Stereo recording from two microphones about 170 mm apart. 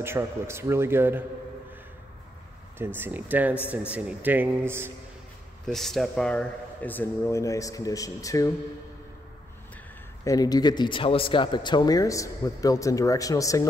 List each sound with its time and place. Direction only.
0.0 s a man's voice: 15° right (ahead or behind)
2.8 s a man's voice: 10° right (ahead or behind)
5.7 s speech: centre (ahead or behind); by 8.5 s 20° left (ahead or behind)
10.2 s speech: 20° left (ahead or behind)